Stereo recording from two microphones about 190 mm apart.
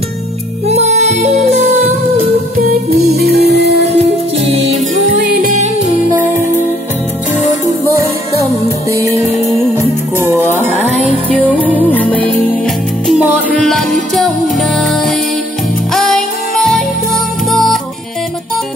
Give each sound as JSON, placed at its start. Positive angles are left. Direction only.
{"t": 0.7, "sound": "music", "side_deg": -35}
{"t": 3.2, "sound": "music", "side_deg": -55}
{"t": 5.2, "sound": "music", "side_deg": -45}
{"t": 11.3, "sound": "music", "side_deg": 10}